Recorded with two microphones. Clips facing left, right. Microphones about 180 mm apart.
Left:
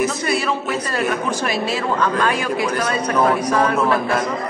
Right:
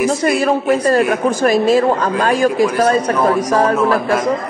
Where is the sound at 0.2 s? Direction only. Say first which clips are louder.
Right 6 dB; 45° right (ahead or behind).